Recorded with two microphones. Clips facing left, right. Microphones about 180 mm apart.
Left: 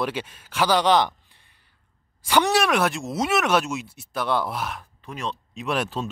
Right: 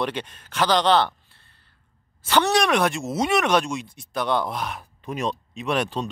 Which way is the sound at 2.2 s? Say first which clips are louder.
Even; 10° left (ahead or behind).